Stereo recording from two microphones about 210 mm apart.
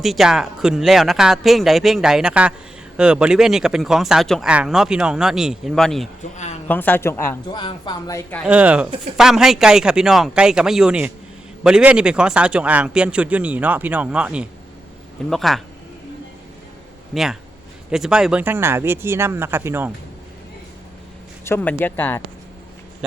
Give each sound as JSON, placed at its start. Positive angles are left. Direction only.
{"t": 0.0, "sound": "speech", "side_deg": 0}
{"t": 6.3, "sound": "speech", "side_deg": 35}
{"t": 6.7, "sound": "speech", "side_deg": 10}
{"t": 8.4, "sound": "speech", "side_deg": -5}
{"t": 17.9, "sound": "speech", "side_deg": 0}
{"t": 21.4, "sound": "speech", "side_deg": 10}